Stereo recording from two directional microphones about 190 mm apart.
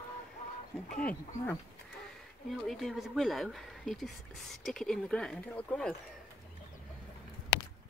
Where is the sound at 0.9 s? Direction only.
5° left (ahead or behind).